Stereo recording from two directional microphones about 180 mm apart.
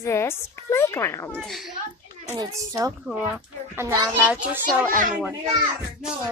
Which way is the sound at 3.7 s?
15° right (ahead or behind).